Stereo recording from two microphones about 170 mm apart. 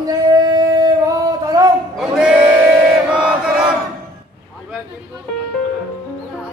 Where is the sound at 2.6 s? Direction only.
20° right (ahead or behind).